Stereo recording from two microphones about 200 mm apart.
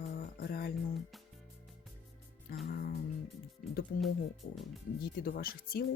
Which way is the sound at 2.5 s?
50° left (ahead or behind).